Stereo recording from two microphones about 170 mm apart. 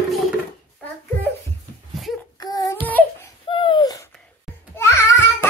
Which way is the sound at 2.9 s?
10° left (ahead or behind).